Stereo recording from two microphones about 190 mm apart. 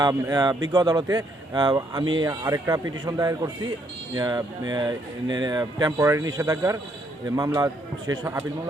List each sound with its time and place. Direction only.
0.0 s a man's voice: 20° right (ahead or behind)